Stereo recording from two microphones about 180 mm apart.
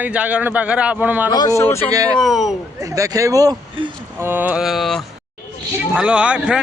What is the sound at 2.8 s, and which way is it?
Speech, 20° right (ahead or behind).